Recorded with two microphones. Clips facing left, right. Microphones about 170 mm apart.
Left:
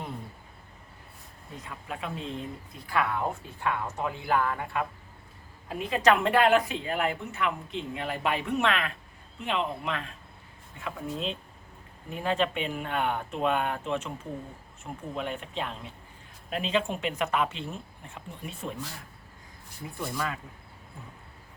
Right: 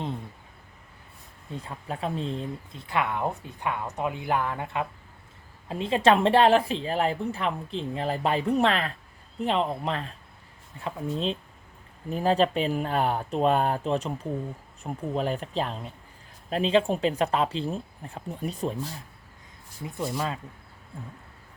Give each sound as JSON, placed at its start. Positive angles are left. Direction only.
{"t": 1.5, "sound": "speech", "side_deg": -35}
{"t": 15.1, "sound": "speech", "side_deg": -35}
{"t": 19.8, "sound": "speech", "side_deg": -25}